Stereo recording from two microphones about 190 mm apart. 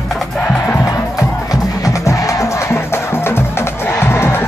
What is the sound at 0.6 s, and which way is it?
Music, 20° left (ahead or behind).